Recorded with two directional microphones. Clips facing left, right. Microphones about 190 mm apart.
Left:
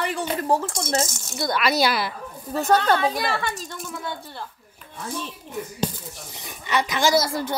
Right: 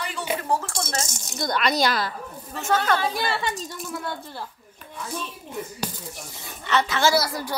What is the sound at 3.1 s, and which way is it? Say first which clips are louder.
Speech: left 1 dB; 30° right (ahead or behind).